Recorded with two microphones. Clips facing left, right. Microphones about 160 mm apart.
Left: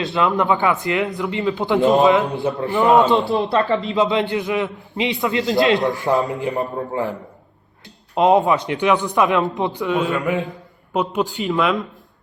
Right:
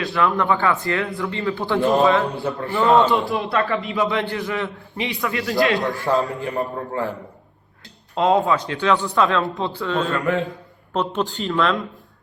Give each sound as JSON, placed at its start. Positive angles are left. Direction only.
{"t": 0.0, "sound": "a man's voice", "side_deg": 20}
{"t": 8.1, "sound": "a man's voice", "side_deg": 20}